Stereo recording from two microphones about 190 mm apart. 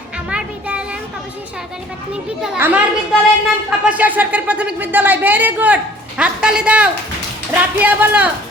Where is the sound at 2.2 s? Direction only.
10° right (ahead or behind).